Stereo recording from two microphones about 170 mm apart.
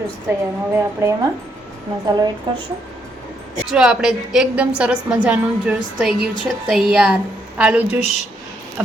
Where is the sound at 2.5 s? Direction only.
25° right (ahead or behind).